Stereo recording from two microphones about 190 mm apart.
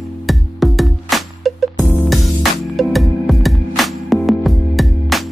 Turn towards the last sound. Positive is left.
turn(degrees=0)  # may be behind; listen again after turning